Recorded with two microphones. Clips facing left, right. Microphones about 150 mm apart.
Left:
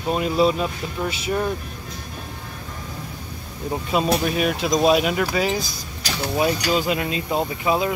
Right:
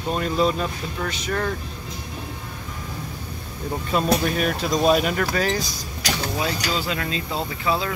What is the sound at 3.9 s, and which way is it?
Speech, 5° left (ahead or behind).